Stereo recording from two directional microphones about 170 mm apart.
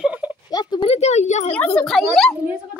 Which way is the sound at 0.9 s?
40° left (ahead or behind).